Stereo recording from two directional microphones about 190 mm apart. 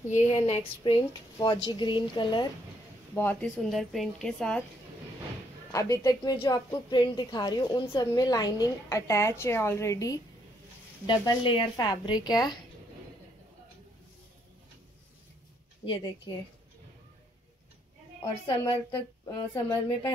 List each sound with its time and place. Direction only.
0.1 s a woman's voice: 35° left (ahead or behind)
3.2 s a woman's voice: 10° left (ahead or behind)
5.7 s a woman's voice: 15° left (ahead or behind)
15.8 s a woman's voice: 25° left (ahead or behind)
18.6 s a woman's voice: 15° left (ahead or behind)